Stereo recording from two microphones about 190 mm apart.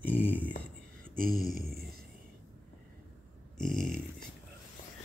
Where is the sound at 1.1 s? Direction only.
50° right (ahead or behind).